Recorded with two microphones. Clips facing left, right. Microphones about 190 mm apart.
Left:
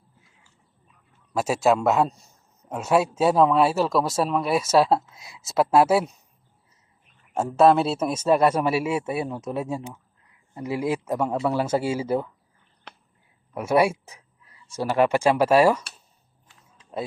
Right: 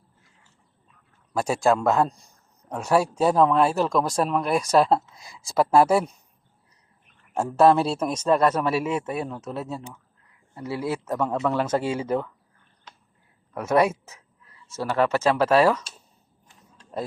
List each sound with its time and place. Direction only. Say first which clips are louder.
1.3 s speech: left 1 dB; 5° left (ahead or behind)
7.3 s speech: even; centre (ahead or behind)
12.9 s a sound: left 4 dB; 65° left (ahead or behind)
13.5 s speech: even; 10° left (ahead or behind)